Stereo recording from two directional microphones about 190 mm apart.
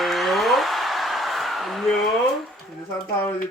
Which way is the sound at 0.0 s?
Centre (ahead or behind).